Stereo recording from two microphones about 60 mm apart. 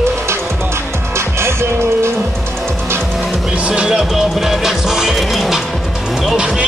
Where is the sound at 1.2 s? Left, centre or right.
Right.